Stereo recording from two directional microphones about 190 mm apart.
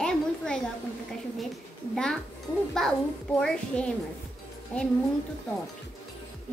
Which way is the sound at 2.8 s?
5° left (ahead or behind).